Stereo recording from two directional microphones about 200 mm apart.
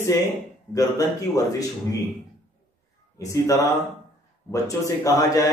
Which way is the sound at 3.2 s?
15° left (ahead or behind).